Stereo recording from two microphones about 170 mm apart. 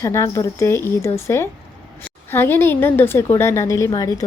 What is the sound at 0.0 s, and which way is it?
A woman's voice, 15° left (ahead or behind).